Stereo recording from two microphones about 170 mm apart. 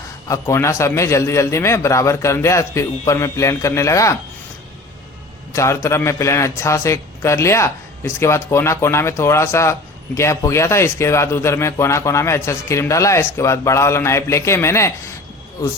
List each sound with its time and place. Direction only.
0.3 s a man's voice: 15° left (ahead or behind)
5.5 s a man's voice: 15° left (ahead or behind)